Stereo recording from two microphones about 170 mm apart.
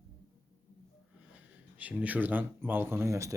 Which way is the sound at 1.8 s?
10° right (ahead or behind).